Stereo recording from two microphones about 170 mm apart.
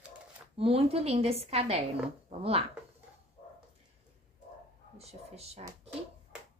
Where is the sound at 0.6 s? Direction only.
35° right (ahead or behind).